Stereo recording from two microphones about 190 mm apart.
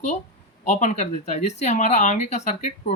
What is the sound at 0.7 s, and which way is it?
Speech, 40° left (ahead or behind).